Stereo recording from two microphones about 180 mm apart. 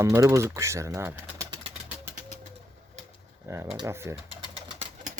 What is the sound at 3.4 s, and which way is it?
Speech, 15° right (ahead or behind).